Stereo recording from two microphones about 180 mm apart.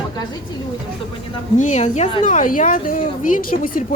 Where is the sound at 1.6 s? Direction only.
40° left (ahead or behind).